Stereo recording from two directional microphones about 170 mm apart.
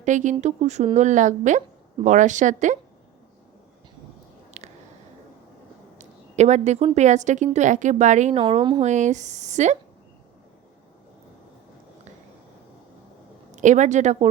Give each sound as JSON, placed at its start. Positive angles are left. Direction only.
{"t": 0.0, "sound": "a woman's voice", "side_deg": -45}
{"t": 4.6, "sound": "a sound", "side_deg": -40}
{"t": 6.0, "sound": "a woman's voice", "side_deg": -40}
{"t": 8.4, "sound": "a woman's voice", "side_deg": -30}
{"t": 8.8, "sound": "a woman's voice", "side_deg": -45}
{"t": 13.6, "sound": "a woman's voice", "side_deg": -45}